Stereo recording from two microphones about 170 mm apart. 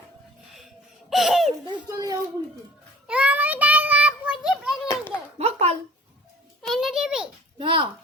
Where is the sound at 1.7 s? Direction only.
25° right (ahead or behind).